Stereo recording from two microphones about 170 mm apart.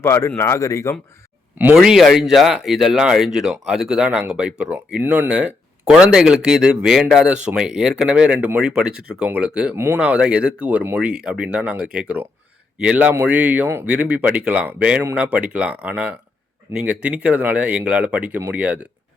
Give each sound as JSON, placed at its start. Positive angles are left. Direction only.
{"t": 0.0, "sound": "speech", "side_deg": 15}
{"t": 1.5, "sound": "speech", "side_deg": -5}